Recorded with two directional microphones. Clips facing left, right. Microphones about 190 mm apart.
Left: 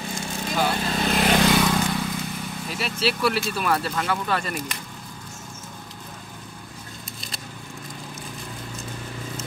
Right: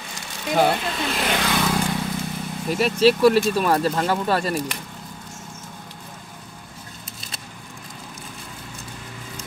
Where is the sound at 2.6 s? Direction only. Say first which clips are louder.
Right 10 dB; 45° right (ahead or behind).